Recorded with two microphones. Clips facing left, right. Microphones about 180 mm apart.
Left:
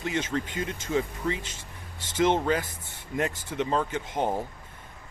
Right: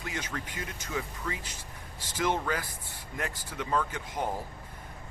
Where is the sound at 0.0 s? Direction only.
25° left (ahead or behind).